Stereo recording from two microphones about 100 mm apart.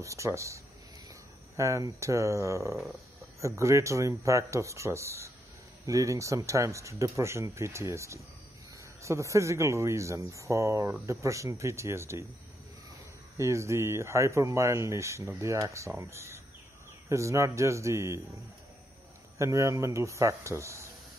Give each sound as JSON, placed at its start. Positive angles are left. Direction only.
{"t": 0.0, "sound": "speech", "side_deg": -30}
{"t": 1.6, "sound": "speech", "side_deg": -30}
{"t": 13.4, "sound": "speech", "side_deg": -30}
{"t": 19.3, "sound": "speech", "side_deg": -30}